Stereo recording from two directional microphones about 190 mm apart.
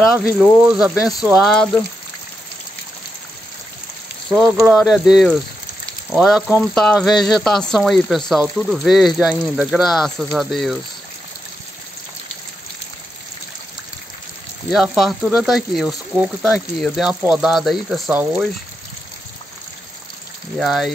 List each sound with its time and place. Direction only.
0.2 s speech: 5° right (ahead or behind)
4.6 s speech: centre (ahead or behind)
14.7 s speech: centre (ahead or behind)
20.5 s speech: centre (ahead or behind)